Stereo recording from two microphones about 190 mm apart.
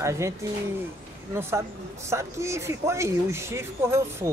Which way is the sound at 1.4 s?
15° right (ahead or behind).